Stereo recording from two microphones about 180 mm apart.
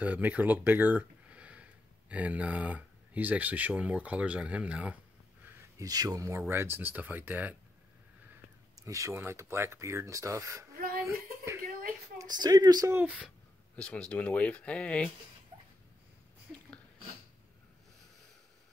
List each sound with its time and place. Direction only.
0.0 s speech: 10° right (ahead or behind)
8.7 s speech: 15° right (ahead or behind)
10.8 s a sound: 55° right (ahead or behind)
12.2 s speech: 20° right (ahead or behind)
12.9 s speech: 10° right (ahead or behind)
13.7 s speech: 5° left (ahead or behind)